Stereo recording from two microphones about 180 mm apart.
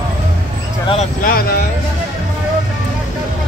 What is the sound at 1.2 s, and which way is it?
Speech, 55° left (ahead or behind).